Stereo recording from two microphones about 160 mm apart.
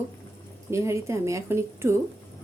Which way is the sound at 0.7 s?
15° right (ahead or behind).